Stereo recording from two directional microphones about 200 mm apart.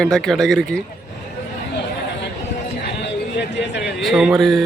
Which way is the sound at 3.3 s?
60° left (ahead or behind).